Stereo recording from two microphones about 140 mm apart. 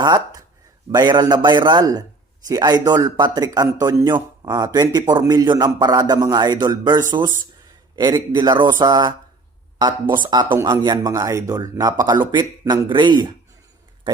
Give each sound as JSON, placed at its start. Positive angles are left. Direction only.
{"t": 0.0, "sound": "a man's voice", "side_deg": -25}